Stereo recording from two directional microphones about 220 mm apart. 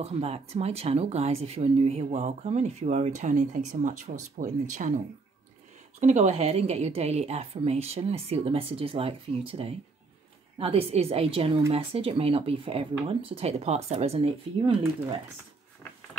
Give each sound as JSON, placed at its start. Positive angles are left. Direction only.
{"t": 0.0, "sound": "speech", "side_deg": -30}
{"t": 5.9, "sound": "speech", "side_deg": -30}